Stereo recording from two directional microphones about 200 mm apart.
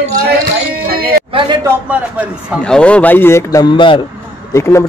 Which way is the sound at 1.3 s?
25° right (ahead or behind).